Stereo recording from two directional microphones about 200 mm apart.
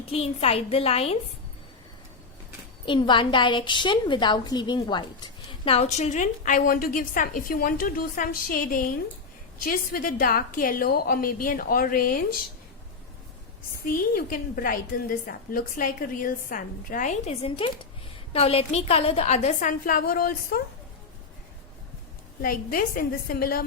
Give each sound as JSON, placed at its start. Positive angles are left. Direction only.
{"t": 0.1, "sound": "a woman's voice", "side_deg": 30}
{"t": 2.8, "sound": "a woman's voice", "side_deg": 25}
{"t": 13.8, "sound": "a woman's voice", "side_deg": 45}
{"t": 22.4, "sound": "a woman's voice", "side_deg": 45}